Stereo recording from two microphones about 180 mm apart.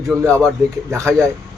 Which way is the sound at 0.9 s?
15° right (ahead or behind).